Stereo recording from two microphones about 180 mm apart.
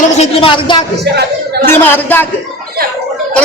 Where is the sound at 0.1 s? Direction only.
35° left (ahead or behind).